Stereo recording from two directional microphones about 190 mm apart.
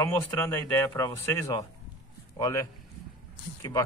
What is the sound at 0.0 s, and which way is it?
Speech, 15° left (ahead or behind).